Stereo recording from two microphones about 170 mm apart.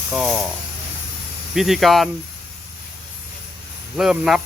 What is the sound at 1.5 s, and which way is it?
Speech, centre (ahead or behind).